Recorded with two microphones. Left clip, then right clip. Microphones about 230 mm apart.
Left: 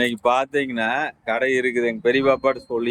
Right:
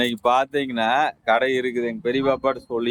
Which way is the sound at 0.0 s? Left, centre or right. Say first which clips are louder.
Even; centre.